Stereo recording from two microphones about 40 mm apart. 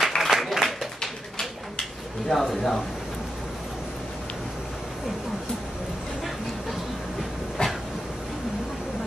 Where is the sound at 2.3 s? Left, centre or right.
Centre.